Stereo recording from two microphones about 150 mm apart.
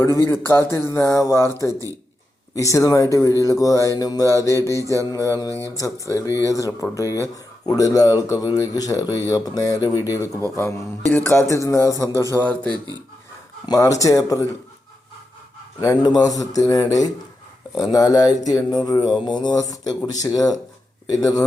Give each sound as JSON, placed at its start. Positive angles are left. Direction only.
{"t": 0.0, "sound": "speech", "side_deg": 20}
{"t": 12.4, "sound": "speech", "side_deg": 10}
{"t": 13.7, "sound": "speech", "side_deg": 20}
{"t": 15.8, "sound": "speech", "side_deg": 25}